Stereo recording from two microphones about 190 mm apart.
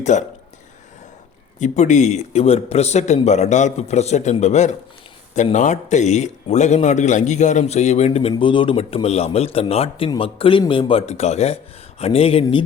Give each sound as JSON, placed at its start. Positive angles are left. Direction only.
{"t": 0.0, "sound": "speech", "side_deg": 40}
{"t": 1.5, "sound": "a man's voice", "side_deg": 40}